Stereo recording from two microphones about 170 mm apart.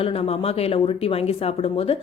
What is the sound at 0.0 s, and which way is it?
Speech, 35° left (ahead or behind).